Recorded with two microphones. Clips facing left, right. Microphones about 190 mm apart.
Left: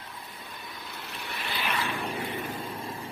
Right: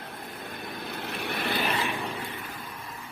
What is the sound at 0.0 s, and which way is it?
Vehicle, 60° right (ahead or behind).